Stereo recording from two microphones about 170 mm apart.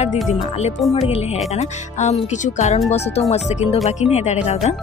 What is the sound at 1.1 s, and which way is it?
A woman's voice, 40° left (ahead or behind).